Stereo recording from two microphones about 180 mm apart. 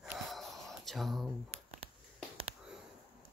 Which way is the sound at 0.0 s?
Centre (ahead or behind).